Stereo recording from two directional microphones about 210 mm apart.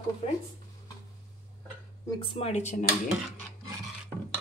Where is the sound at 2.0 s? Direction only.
20° left (ahead or behind).